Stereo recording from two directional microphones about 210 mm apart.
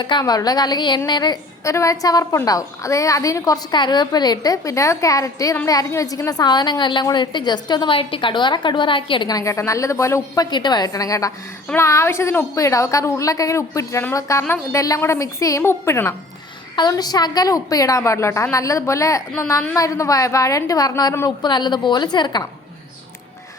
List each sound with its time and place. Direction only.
0.0 s a woman's voice: 20° left (ahead or behind)